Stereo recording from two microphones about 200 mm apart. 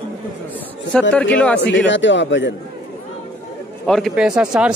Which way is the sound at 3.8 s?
Centre (ahead or behind).